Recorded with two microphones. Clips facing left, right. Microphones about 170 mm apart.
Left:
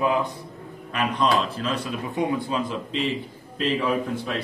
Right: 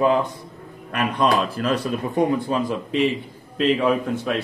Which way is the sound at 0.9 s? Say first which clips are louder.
Right 2 dB; 55° right (ahead or behind).